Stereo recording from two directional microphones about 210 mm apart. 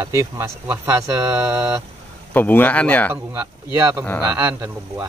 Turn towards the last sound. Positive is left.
turn(degrees=-10)  # may be behind; listen again after turning